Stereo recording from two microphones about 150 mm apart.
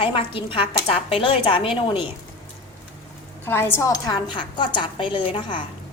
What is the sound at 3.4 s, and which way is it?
A woman's voice, 15° left (ahead or behind).